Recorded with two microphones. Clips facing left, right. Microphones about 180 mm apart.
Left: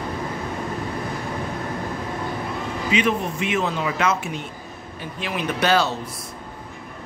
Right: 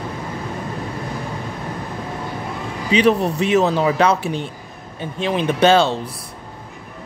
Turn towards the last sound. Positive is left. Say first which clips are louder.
# right 6 dB
turn(degrees=-25)  # may be behind; listen again after turning